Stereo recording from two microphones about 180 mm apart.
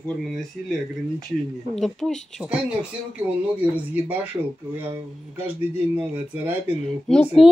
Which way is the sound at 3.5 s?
10° right (ahead or behind).